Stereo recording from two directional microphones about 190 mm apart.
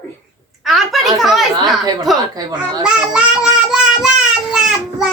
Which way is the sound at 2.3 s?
20° right (ahead or behind).